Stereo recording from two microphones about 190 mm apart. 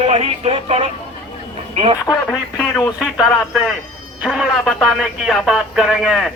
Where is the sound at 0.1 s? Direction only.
35° right (ahead or behind).